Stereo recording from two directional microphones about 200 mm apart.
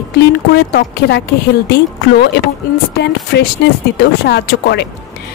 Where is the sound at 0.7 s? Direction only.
55° left (ahead or behind).